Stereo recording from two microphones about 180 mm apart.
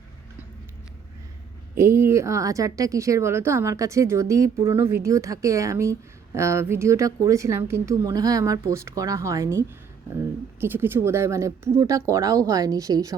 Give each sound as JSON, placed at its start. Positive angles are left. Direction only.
{"t": 1.7, "sound": "a woman's voice", "side_deg": -15}